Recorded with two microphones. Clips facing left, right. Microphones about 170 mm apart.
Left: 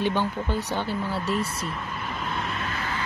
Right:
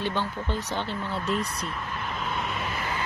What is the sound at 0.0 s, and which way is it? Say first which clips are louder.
Speech: left 4 dB; 15° left (ahead or behind).